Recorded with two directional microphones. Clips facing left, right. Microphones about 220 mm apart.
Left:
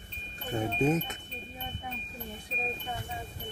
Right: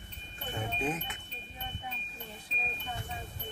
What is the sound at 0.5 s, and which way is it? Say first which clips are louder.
Speech: left 8 dB; 40° left (ahead or behind).